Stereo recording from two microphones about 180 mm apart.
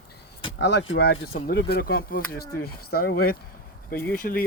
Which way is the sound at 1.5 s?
60° left (ahead or behind).